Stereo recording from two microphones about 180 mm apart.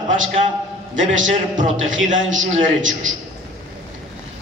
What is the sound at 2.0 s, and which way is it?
A man's voice, 90° right.